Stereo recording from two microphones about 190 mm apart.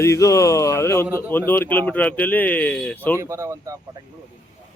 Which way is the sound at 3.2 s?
15° right (ahead or behind).